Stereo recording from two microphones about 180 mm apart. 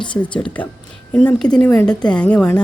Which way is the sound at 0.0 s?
25° left (ahead or behind).